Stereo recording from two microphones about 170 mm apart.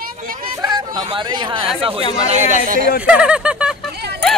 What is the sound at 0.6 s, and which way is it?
Chatter, 25° right (ahead or behind).